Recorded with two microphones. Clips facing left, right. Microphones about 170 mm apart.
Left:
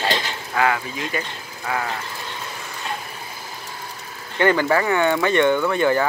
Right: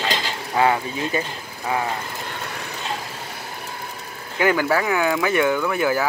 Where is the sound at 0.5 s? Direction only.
25° right (ahead or behind).